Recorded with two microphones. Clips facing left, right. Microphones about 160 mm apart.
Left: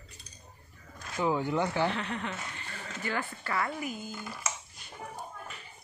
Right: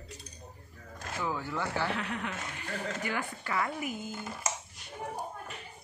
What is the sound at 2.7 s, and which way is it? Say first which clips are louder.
Speech: right 8 dB; 50° right (ahead or behind).